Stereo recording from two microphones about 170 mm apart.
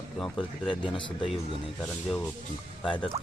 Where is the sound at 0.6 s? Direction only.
30° left (ahead or behind).